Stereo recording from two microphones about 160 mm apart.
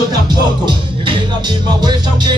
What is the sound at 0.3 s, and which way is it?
Music, 30° right (ahead or behind).